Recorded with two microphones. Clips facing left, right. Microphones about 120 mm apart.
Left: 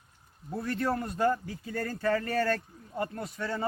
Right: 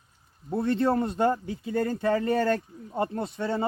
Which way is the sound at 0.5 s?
25° right (ahead or behind).